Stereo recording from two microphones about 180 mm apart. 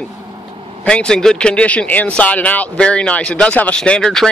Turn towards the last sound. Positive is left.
turn(degrees=5)  # may be behind; listen again after turning